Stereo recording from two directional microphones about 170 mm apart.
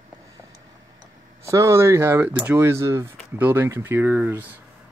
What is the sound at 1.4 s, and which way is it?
Speech, 15° right (ahead or behind).